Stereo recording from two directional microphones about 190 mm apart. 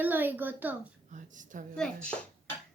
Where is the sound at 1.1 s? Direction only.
40° right (ahead or behind).